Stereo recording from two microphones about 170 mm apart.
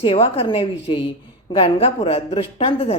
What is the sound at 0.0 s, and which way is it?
Speech, 35° left (ahead or behind).